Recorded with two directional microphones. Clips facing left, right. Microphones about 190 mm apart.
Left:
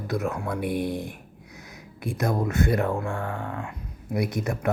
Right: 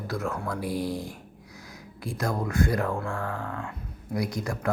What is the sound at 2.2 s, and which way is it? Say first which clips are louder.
Speech: left 2 dB; 20° left (ahead or behind).